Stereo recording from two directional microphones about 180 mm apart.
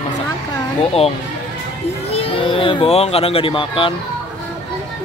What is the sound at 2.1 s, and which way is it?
Speech, 30° left (ahead or behind).